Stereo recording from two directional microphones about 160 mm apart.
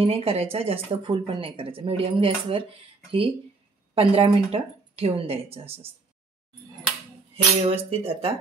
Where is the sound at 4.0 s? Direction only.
35° right (ahead or behind).